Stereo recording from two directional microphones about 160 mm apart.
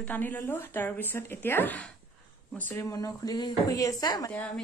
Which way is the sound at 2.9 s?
25° left (ahead or behind).